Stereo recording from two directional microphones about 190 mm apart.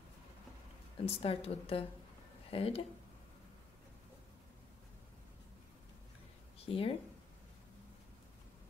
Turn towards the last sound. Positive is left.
turn(degrees=30)  # may be behind; listen again after turning